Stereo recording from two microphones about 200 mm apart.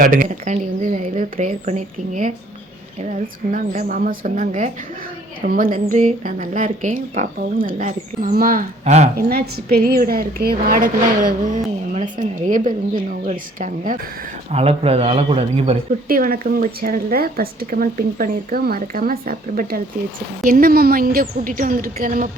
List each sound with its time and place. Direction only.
0.0 s a woman's voice: 45° right (ahead or behind)
9.1 s a woman's voice: 50° right (ahead or behind)
14.5 s speech: 30° right (ahead or behind)
16.0 s speech: 45° right (ahead or behind)